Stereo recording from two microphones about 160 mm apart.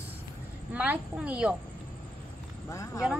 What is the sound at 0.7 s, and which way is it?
Speech, 10° right (ahead or behind).